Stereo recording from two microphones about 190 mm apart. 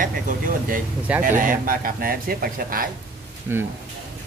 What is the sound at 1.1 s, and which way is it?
Speech, 5° right (ahead or behind).